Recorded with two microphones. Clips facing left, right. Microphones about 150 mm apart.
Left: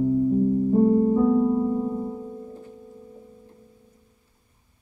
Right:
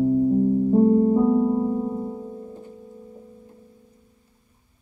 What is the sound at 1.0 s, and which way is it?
Music, 25° right (ahead or behind).